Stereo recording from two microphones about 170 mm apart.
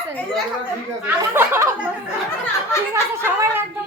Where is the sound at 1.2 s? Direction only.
15° right (ahead or behind).